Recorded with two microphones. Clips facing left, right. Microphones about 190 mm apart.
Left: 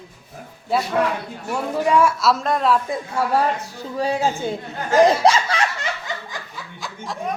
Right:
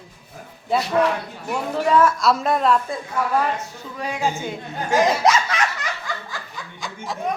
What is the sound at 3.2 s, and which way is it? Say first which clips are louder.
A woman's voice: left 1 dB; 30° left (ahead or behind).